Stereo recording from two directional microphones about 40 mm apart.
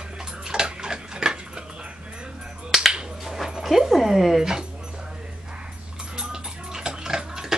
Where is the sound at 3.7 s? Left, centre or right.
Centre.